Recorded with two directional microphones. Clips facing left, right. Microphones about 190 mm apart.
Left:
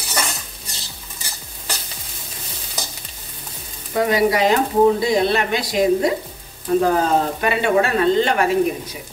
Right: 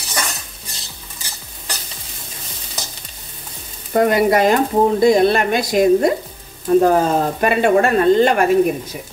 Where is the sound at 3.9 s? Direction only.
50° right (ahead or behind).